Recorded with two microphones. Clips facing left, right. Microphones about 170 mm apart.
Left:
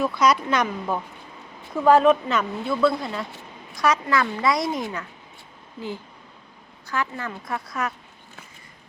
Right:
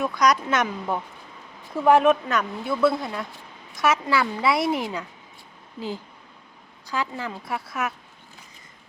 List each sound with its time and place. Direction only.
0.2 s a woman's voice: centre (ahead or behind)
6.8 s a woman's voice: 15° right (ahead or behind)